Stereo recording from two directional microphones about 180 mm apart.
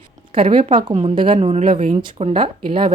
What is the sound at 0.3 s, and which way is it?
Speech, 30° right (ahead or behind).